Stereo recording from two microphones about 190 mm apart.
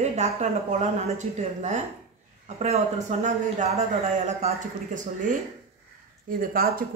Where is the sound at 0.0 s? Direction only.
35° right (ahead or behind).